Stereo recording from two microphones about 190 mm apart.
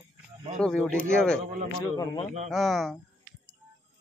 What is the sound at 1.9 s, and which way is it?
Speech, 20° left (ahead or behind).